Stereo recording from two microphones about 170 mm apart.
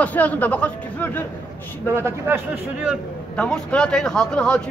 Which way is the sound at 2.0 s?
15° right (ahead or behind).